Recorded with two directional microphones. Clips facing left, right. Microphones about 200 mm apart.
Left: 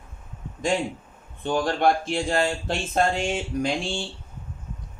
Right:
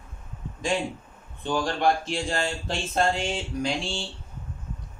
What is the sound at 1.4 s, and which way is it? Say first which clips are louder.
Speech: left 2 dB; 55° left (ahead or behind).